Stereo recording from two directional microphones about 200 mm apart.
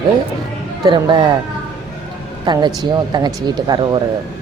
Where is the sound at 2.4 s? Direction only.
20° right (ahead or behind).